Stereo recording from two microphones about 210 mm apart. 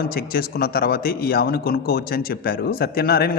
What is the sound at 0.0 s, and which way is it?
A man's voice, 45° left (ahead or behind).